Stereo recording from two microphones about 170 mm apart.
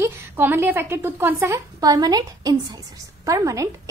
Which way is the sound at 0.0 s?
10° right (ahead or behind).